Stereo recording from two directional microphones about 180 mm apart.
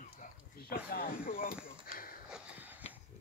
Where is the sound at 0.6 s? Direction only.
55° left (ahead or behind).